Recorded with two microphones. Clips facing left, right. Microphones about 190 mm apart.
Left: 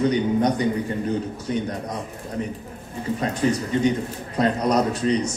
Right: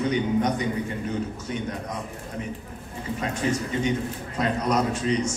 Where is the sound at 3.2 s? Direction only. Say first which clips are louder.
Left 3 dB; 35° left (ahead or behind).